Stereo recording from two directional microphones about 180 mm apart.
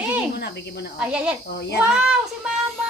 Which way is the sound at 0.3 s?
65° left (ahead or behind).